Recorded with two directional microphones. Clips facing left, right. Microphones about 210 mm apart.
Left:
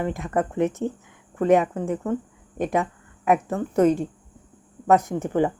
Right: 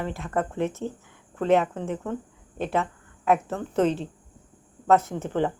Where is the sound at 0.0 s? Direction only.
15° left (ahead or behind).